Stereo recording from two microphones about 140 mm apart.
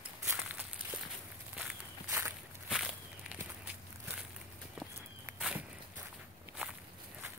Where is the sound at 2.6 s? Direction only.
5° right (ahead or behind).